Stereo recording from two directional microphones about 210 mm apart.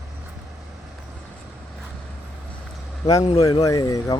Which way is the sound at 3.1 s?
15° left (ahead or behind).